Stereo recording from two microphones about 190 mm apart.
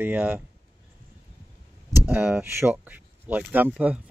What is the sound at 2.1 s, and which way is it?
Speech, 10° right (ahead or behind).